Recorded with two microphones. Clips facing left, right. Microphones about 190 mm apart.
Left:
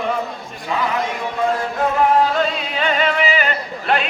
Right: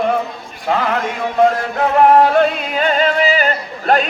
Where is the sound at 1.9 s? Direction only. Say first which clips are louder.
Right 7 dB; 60° right (ahead or behind).